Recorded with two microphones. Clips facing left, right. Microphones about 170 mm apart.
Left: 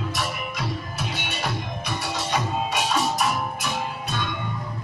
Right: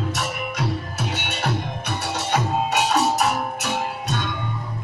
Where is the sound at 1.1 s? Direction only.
65° right (ahead or behind).